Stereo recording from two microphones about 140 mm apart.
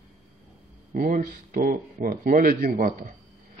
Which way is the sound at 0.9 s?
75° right (ahead or behind).